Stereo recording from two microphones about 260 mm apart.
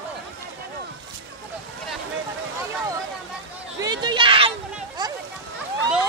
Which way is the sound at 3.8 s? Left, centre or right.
Centre.